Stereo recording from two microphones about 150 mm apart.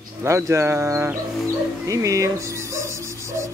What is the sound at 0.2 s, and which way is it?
Speech, 20° right (ahead or behind).